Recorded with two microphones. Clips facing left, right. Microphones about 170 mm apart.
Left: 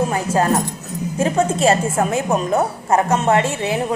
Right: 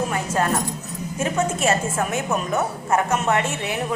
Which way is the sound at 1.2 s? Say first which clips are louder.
Left 5 dB; 30° left (ahead or behind).